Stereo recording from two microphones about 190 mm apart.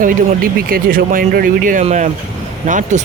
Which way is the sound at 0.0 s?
50° right (ahead or behind).